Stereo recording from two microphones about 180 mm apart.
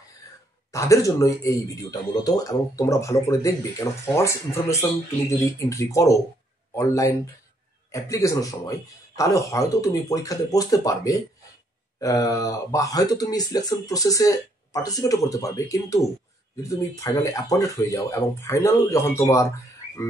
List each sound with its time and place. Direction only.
0.7 s speech: 15° left (ahead or behind)